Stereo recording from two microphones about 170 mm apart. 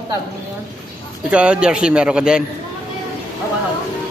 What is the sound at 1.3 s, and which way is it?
Speech, 5° right (ahead or behind).